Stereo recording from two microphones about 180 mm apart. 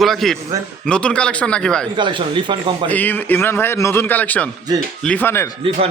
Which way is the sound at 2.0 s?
25° right (ahead or behind).